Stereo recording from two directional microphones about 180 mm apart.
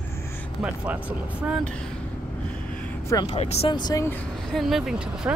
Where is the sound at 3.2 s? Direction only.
35° left (ahead or behind); by 4.2 s 15° left (ahead or behind).